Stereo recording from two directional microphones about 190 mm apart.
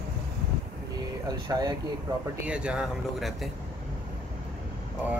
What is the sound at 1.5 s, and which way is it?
Speech, 15° right (ahead or behind).